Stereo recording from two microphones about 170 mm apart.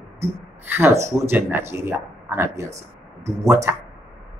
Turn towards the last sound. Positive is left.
turn(degrees=-20)  # may be behind; listen again after turning